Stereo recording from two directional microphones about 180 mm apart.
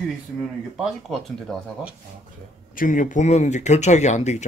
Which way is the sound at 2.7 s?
45° left (ahead or behind).